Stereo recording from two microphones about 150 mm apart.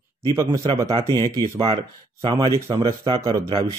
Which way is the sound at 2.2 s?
30° right (ahead or behind).